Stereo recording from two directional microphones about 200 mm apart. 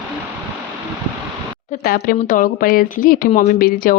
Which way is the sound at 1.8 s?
45° left (ahead or behind).